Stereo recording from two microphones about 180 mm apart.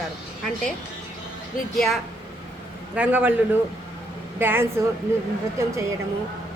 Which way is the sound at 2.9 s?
10° right (ahead or behind).